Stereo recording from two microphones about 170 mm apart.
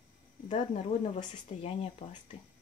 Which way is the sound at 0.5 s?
40° left (ahead or behind).